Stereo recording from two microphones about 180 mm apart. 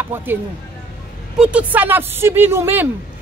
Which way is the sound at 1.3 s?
10° right (ahead or behind).